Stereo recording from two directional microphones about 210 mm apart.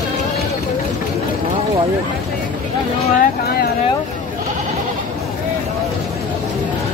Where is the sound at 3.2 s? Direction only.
45° left (ahead or behind).